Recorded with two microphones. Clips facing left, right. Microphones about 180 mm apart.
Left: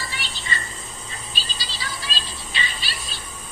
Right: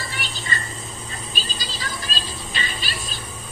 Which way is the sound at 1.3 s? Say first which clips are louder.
Right 3 dB; 45° right (ahead or behind).